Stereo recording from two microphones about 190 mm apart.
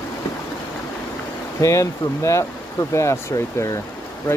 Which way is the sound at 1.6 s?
15° left (ahead or behind).